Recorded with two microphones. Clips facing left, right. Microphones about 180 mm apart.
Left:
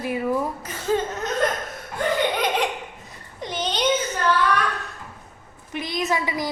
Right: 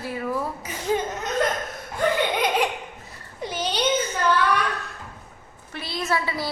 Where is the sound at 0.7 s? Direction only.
15° right (ahead or behind).